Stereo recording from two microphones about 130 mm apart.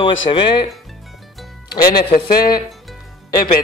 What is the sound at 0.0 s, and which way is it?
Speech, 40° left (ahead or behind).